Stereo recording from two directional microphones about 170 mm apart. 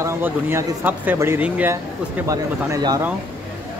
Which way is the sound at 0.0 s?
15° right (ahead or behind).